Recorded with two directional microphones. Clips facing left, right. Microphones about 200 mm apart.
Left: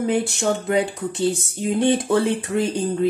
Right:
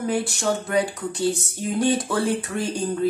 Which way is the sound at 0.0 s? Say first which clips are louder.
Left 3 dB; 20° left (ahead or behind).